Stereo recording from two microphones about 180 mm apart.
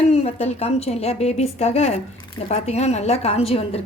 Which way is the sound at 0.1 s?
35° left (ahead or behind).